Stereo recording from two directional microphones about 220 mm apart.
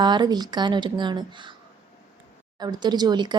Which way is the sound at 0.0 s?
20° right (ahead or behind).